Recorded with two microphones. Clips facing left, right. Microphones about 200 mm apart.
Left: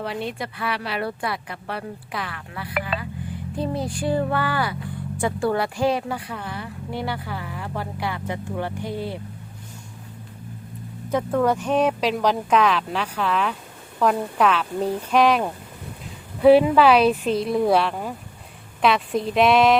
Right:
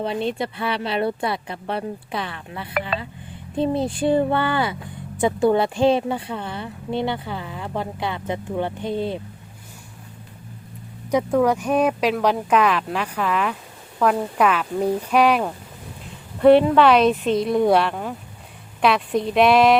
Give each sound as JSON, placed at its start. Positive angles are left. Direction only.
{"t": 0.0, "sound": "speech", "side_deg": -25}
{"t": 11.1, "sound": "speech", "side_deg": -10}
{"t": 16.4, "sound": "a woman's voice", "side_deg": 5}